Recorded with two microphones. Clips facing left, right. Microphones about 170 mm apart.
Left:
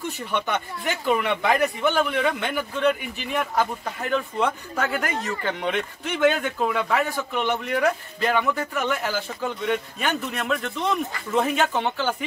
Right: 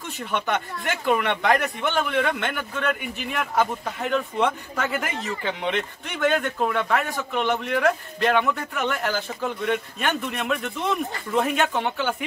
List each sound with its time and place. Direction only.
0.5 s speech: centre (ahead or behind)